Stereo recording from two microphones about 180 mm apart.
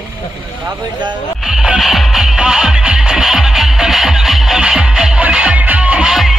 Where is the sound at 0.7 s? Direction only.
25° right (ahead or behind).